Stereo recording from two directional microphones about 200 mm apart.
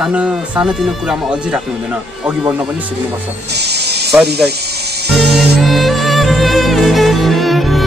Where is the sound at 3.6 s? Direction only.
55° right (ahead or behind).